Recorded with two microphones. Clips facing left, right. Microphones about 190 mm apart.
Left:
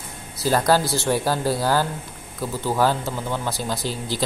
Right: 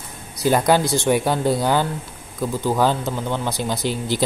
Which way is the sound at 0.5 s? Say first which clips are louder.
Right 2 dB; 20° right (ahead or behind).